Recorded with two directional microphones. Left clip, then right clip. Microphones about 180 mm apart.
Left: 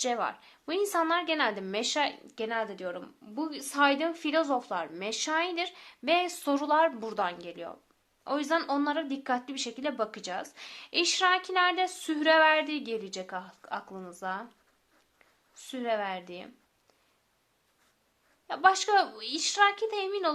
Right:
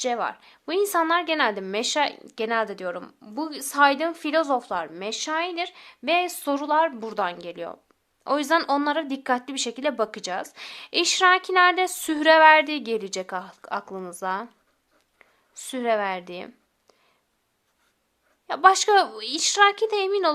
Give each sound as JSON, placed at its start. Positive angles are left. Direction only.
{"t": 0.0, "sound": "a woman's voice", "side_deg": -15}
{"t": 15.5, "sound": "a woman's voice", "side_deg": -35}
{"t": 18.4, "sound": "speech", "side_deg": -35}